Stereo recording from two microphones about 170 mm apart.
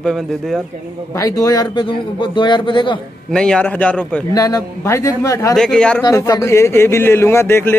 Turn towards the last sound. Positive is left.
turn(degrees=15)  # may be behind; listen again after turning